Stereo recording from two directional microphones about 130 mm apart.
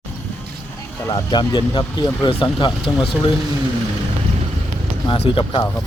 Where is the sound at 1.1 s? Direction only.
35° left (ahead or behind).